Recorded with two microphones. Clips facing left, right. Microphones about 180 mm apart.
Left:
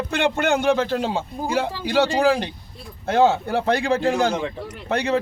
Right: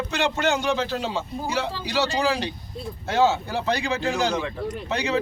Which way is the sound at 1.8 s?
50° left (ahead or behind).